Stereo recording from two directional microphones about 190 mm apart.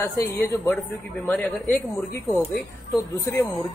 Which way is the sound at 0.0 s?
15° left (ahead or behind).